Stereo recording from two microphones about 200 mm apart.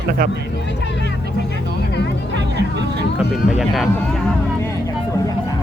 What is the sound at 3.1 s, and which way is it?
Speech, centre (ahead or behind).